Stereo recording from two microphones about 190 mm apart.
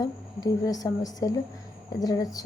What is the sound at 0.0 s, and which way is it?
Speech, 20° left (ahead or behind).